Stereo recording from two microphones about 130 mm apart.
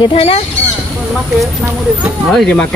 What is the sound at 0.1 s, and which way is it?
Speech, 50° left (ahead or behind).